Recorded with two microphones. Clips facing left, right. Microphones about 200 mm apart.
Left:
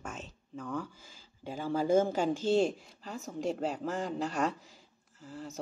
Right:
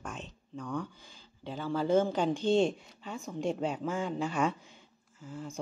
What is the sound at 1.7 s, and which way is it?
Speech, 10° left (ahead or behind).